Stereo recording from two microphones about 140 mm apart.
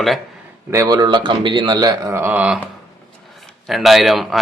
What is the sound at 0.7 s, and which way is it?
Speech, 25° right (ahead or behind).